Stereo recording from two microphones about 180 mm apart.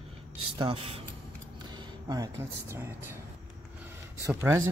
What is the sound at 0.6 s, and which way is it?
Speech, 30° right (ahead or behind).